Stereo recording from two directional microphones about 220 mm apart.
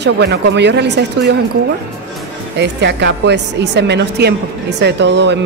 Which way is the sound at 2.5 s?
50° right (ahead or behind).